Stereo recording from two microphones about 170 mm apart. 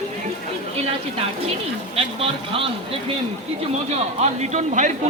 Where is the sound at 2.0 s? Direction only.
35° right (ahead or behind).